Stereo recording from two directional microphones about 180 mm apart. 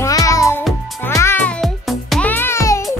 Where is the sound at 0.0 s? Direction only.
20° left (ahead or behind).